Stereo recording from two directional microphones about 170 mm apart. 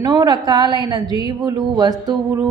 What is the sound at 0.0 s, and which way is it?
A woman's voice, 25° right (ahead or behind).